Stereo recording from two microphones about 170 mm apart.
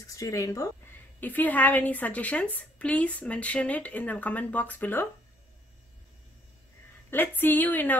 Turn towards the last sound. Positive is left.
turn(degrees=10)  # may be behind; listen again after turning